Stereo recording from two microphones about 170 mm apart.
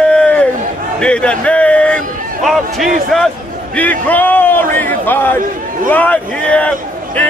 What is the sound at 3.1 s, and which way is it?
A man's voice, centre (ahead or behind).